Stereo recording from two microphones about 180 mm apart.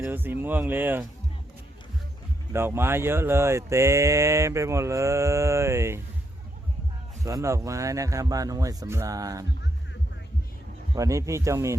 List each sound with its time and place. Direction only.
0.0 s speech: 10° right (ahead or behind)
2.5 s speech: 15° right (ahead or behind)
7.3 s speech: 20° right (ahead or behind)
10.9 s speech: 15° right (ahead or behind)